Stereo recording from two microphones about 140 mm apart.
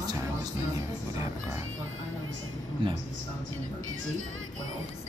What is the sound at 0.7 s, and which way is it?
Music, 20° right (ahead or behind).